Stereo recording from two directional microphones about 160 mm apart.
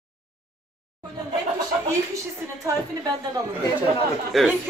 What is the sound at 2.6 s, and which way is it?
Speech, 20° right (ahead or behind).